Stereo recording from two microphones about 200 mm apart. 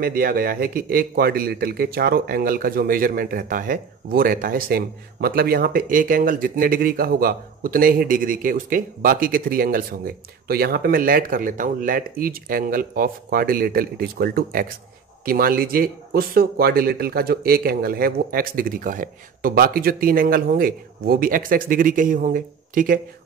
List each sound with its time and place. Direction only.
0.0 s speech: 45° right (ahead or behind)